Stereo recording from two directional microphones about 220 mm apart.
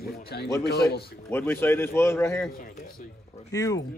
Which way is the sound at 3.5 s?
15° left (ahead or behind).